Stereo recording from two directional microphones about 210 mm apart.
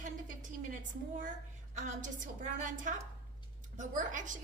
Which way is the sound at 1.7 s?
35° right (ahead or behind).